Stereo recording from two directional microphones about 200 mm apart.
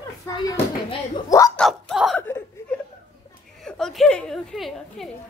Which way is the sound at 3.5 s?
Centre (ahead or behind).